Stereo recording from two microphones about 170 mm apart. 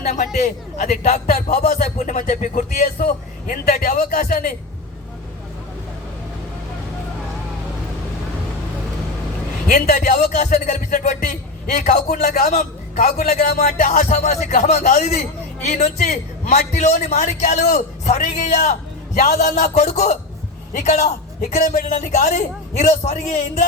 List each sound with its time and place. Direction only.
0.3 s a man's voice: 50° left (ahead or behind)
9.6 s a man's voice: 45° left (ahead or behind)
19.3 s a man's voice: 70° left (ahead or behind)
19.5 s a sound: 40° left (ahead or behind)
20.7 s a man's voice: 45° left (ahead or behind)
21.5 s a man's voice: 55° left (ahead or behind)